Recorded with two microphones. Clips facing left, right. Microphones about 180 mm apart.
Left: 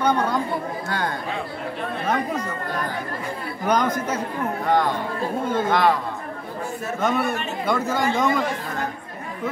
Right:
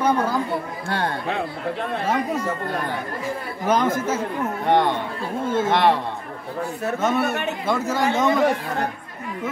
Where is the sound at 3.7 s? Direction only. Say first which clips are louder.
Right 1 dB; 5° right (ahead or behind).